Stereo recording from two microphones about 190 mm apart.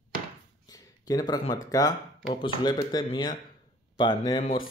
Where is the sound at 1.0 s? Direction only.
20° left (ahead or behind).